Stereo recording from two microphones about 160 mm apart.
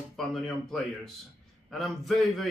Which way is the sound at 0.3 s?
Centre (ahead or behind).